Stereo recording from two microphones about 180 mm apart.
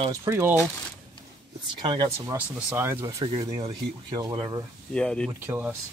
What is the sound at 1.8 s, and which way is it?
Speech, 25° right (ahead or behind).